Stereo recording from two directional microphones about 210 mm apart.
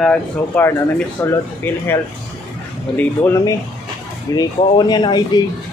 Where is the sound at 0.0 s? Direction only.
10° left (ahead or behind).